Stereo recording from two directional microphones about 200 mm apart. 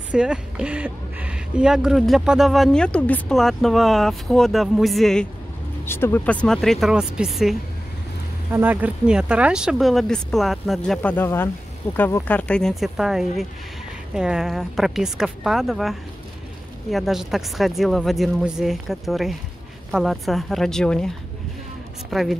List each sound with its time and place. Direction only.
0.1 s speech: 5° right (ahead or behind)
8.5 s speech: 10° right (ahead or behind)
22.1 s speech: centre (ahead or behind)